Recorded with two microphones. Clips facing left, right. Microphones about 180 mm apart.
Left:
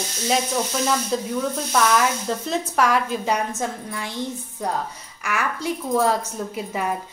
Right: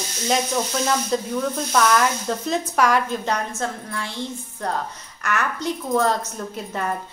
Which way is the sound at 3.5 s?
15° left (ahead or behind).